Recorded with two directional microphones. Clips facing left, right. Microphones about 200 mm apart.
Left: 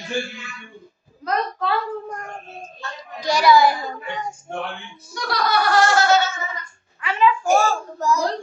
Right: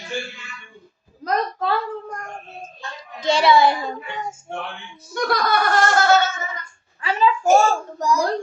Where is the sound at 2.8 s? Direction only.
25° right (ahead or behind).